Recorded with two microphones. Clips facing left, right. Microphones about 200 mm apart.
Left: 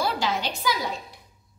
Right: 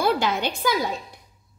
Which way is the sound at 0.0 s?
55° right (ahead or behind).